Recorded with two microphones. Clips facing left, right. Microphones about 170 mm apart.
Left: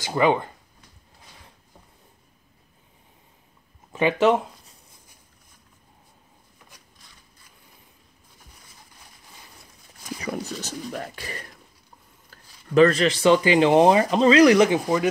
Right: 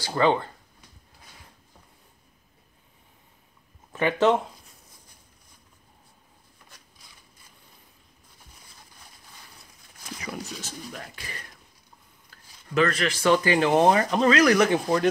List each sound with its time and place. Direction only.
0.0 s speech: 15° left (ahead or behind)
3.9 s speech: 10° left (ahead or behind)
10.3 s speech: 45° left (ahead or behind)
12.7 s speech: 30° left (ahead or behind)